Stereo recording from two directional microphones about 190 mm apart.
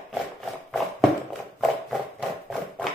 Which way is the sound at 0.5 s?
Centre (ahead or behind).